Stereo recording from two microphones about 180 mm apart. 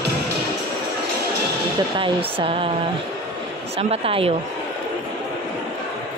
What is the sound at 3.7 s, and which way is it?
Speech, 35° right (ahead or behind).